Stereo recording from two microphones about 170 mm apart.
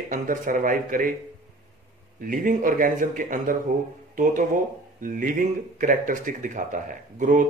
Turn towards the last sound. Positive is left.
turn(degrees=-50)  # may be behind; listen again after turning